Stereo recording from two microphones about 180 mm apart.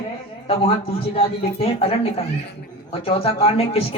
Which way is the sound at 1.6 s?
35° left (ahead or behind).